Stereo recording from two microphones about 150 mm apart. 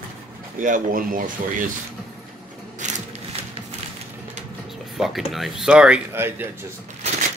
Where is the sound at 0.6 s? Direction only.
65° right (ahead or behind).